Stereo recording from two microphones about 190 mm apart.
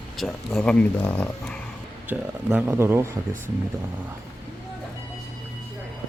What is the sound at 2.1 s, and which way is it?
Speech, 10° right (ahead or behind).